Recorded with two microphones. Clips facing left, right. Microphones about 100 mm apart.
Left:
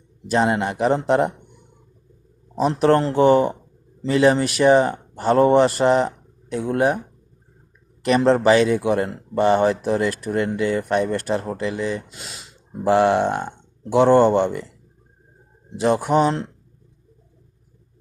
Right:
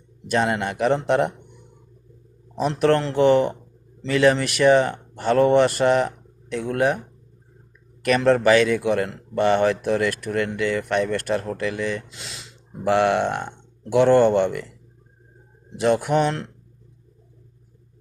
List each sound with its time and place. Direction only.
0.3 s speech: 30° left (ahead or behind)
2.6 s speech: 35° left (ahead or behind)
8.0 s speech: 30° left (ahead or behind)
15.8 s speech: 35° left (ahead or behind)